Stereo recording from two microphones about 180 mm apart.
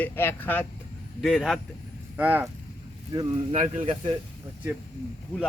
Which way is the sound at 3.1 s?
30° right (ahead or behind).